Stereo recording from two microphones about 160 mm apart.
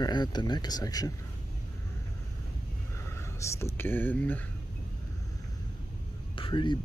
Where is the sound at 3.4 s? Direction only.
15° left (ahead or behind).